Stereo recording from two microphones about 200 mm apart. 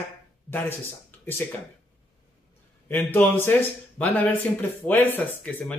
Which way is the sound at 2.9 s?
10° left (ahead or behind).